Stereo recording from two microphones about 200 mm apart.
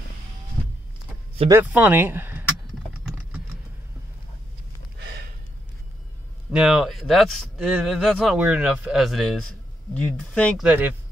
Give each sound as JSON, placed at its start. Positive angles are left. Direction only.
{"t": 1.5, "sound": "speech", "side_deg": -10}
{"t": 4.9, "sound": "a sound", "side_deg": -55}
{"t": 6.5, "sound": "speech", "side_deg": 0}